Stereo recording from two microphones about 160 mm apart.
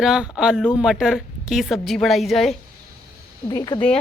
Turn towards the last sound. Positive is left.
turn(degrees=25)  # may be behind; listen again after turning